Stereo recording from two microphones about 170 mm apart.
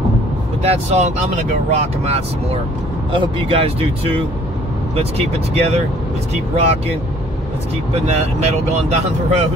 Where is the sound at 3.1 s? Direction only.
35° right (ahead or behind).